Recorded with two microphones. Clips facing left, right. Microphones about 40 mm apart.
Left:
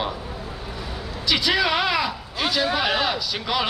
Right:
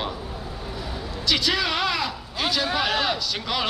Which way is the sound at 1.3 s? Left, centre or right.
Centre.